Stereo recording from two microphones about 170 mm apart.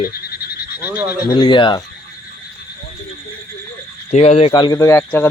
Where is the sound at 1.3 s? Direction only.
25° left (ahead or behind).